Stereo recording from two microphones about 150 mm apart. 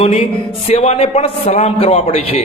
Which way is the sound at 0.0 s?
45° left (ahead or behind).